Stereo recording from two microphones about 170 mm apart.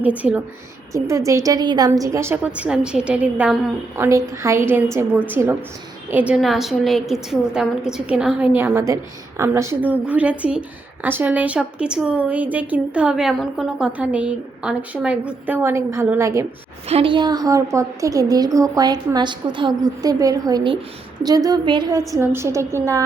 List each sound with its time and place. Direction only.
0.0 s a woman's voice: 10° right (ahead or behind)
16.9 s a woman's voice: 30° right (ahead or behind)
22.1 s a woman's voice: 15° right (ahead or behind)